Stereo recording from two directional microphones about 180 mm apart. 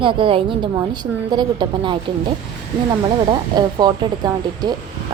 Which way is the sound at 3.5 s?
20° right (ahead or behind).